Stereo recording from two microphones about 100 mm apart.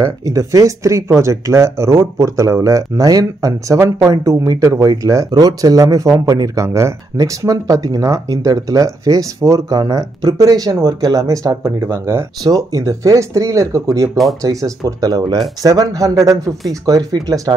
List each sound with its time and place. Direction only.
0.0 s speech: 35° right (ahead or behind)
12.4 s speech: 35° right (ahead or behind)